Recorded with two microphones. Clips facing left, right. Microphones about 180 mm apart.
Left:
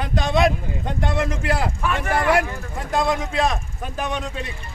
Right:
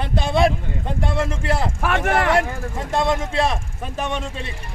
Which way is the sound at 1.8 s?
80° right.